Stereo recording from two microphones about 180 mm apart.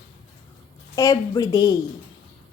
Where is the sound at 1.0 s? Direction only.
20° left (ahead or behind).